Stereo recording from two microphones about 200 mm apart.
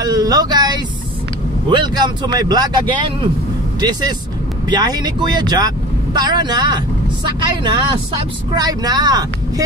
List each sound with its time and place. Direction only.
0.0 s a sound: 20° right (ahead or behind)
1.7 s speech: 20° right (ahead or behind)
4.6 s speech: 20° right (ahead or behind)